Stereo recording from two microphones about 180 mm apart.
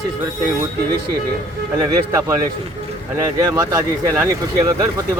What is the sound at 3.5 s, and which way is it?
Speech, 20° right (ahead or behind).